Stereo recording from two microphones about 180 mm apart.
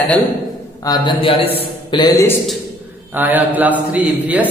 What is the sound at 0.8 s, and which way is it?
A man's voice, 25° left (ahead or behind).